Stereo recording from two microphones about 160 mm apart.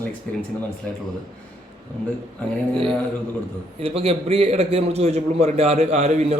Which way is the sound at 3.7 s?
40° right (ahead or behind).